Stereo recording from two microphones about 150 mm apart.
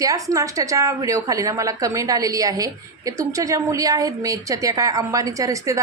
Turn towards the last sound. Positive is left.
turn(degrees=-20)  # may be behind; listen again after turning